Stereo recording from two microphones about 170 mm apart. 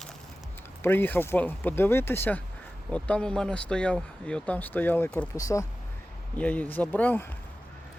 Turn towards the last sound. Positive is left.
turn(degrees=10)  # may be behind; listen again after turning